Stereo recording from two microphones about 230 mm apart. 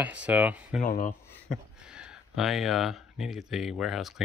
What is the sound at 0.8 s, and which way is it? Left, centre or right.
Speech, left.